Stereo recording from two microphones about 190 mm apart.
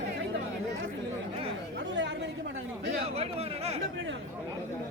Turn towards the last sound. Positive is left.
turn(degrees=-35)  # may be behind; listen again after turning